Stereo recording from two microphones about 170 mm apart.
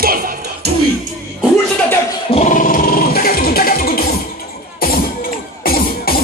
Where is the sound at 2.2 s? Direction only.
40° left (ahead or behind); by 4.0 s 60° left (ahead or behind).